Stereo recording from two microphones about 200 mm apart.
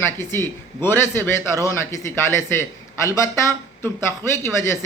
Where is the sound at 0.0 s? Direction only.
10° left (ahead or behind).